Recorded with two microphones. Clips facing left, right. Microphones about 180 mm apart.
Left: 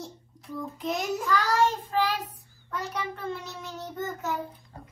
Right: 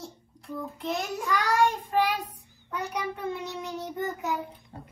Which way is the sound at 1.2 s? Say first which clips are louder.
Right 1 dB; 15° right (ahead or behind).